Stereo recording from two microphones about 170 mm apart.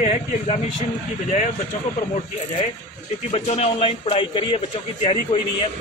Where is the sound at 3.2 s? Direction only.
40° left (ahead or behind).